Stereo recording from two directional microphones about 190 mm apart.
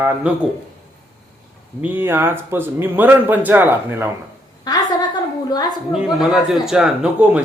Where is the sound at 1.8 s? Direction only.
10° right (ahead or behind).